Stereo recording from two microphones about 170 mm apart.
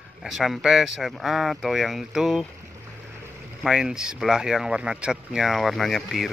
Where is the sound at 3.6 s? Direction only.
5° right (ahead or behind).